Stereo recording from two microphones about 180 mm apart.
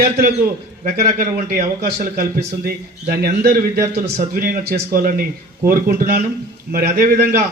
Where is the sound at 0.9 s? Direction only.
50° right (ahead or behind).